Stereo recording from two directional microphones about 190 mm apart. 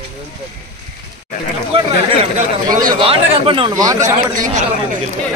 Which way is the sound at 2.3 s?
45° right (ahead or behind).